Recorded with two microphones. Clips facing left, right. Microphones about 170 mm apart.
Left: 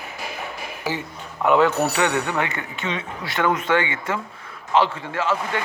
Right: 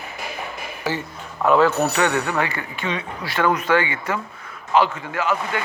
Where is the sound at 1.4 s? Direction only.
20° left (ahead or behind).